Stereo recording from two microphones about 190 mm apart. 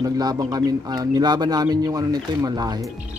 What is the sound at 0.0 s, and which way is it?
Speech, 20° right (ahead or behind).